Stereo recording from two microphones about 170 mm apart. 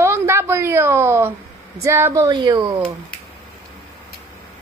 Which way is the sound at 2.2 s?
25° right (ahead or behind).